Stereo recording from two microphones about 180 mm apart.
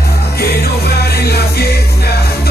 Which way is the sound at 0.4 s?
60° left (ahead or behind).